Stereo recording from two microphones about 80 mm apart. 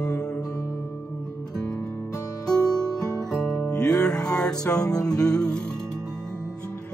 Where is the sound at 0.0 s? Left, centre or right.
Centre.